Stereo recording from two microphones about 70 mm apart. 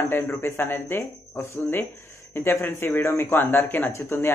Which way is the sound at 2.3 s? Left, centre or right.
Left.